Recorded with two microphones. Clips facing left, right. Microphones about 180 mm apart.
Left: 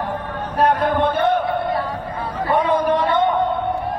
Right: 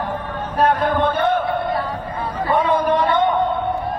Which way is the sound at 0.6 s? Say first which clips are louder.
Even; 15° left (ahead or behind).